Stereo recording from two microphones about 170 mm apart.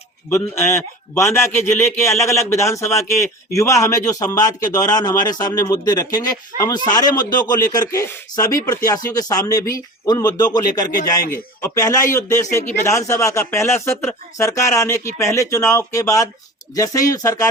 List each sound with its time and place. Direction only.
0.3 s speech: 15° left (ahead or behind)